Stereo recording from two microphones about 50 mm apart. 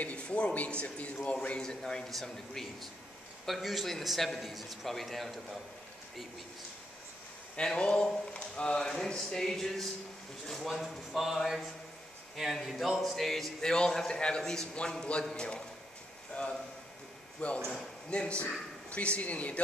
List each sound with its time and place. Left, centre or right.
0.0 s a man's voice: left; by 5.6 s centre
7.5 s a man's voice: left
17.4 s a man's voice: left